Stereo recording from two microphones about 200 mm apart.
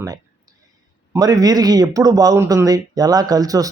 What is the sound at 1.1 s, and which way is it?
Speech, 20° right (ahead or behind).